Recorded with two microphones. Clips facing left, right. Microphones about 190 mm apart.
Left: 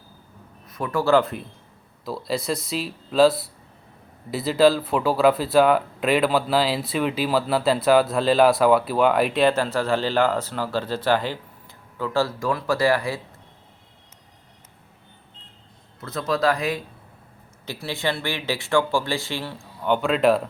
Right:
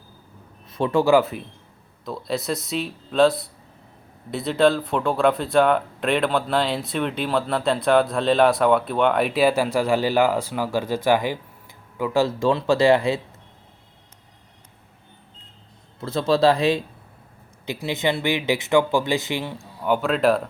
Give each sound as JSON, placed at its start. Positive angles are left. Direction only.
{"t": 0.7, "sound": "speech", "side_deg": -25}
{"t": 1.1, "sound": "a man's voice", "side_deg": -5}
{"t": 16.0, "sound": "a man's voice", "side_deg": -30}
{"t": 19.8, "sound": "speech", "side_deg": -5}